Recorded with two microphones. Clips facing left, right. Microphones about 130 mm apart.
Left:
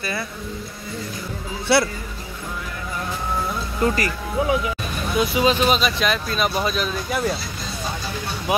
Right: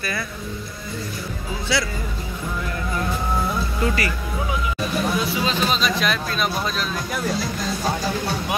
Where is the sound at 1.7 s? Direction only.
60° left (ahead or behind).